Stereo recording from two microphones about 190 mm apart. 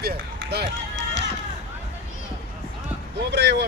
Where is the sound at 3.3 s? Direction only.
65° right (ahead or behind).